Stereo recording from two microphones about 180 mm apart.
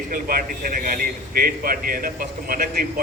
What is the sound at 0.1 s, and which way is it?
A man's voice, 55° right (ahead or behind).